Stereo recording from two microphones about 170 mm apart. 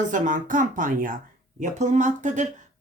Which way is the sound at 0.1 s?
50° right (ahead or behind).